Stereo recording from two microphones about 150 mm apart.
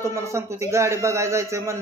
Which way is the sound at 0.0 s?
20° right (ahead or behind).